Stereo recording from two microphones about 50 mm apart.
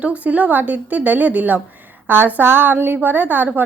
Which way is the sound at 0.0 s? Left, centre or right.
Right.